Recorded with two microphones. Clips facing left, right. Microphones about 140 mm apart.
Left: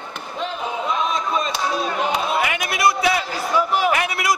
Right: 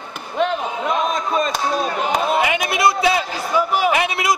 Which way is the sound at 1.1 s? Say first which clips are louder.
Right 3 dB; 45° right (ahead or behind).